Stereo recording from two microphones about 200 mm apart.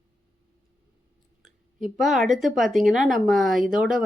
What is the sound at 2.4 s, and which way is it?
A woman's voice, centre (ahead or behind).